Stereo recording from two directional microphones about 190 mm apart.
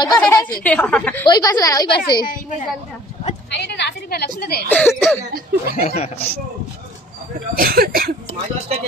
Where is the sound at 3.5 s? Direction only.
65° left (ahead or behind).